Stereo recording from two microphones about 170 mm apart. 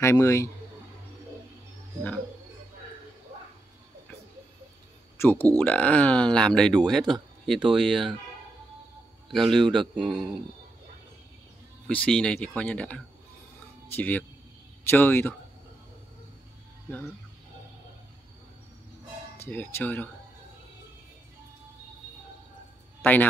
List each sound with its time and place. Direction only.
0.0 s speech: 15° left (ahead or behind)
5.2 s speech: 10° left (ahead or behind)
9.3 s speech: centre (ahead or behind)
11.9 s speech: 5° left (ahead or behind)
19.3 s speech: 10° left (ahead or behind)